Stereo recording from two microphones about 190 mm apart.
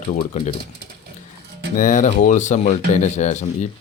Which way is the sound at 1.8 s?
40° left (ahead or behind).